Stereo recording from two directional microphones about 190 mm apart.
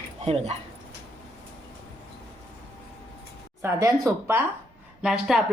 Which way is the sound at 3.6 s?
15° right (ahead or behind).